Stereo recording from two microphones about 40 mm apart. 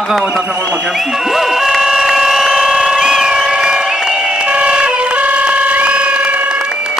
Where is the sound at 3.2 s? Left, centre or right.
Centre.